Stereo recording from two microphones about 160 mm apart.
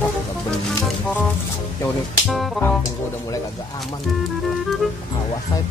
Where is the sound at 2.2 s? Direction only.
Centre (ahead or behind).